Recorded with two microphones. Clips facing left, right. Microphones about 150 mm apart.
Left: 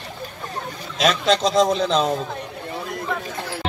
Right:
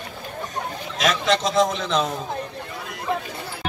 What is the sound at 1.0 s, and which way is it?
Speech, 30° left (ahead or behind).